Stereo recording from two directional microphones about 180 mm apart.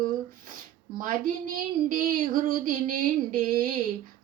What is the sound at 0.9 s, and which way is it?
Speech, 50° right (ahead or behind).